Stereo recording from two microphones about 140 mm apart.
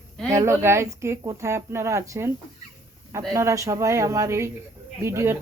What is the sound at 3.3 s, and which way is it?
Speech, 20° right (ahead or behind).